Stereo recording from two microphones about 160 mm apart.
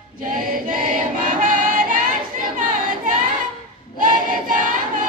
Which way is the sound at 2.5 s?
55° right (ahead or behind).